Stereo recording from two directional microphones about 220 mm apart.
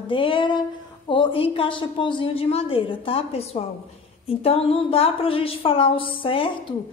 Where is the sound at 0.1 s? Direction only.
25° left (ahead or behind).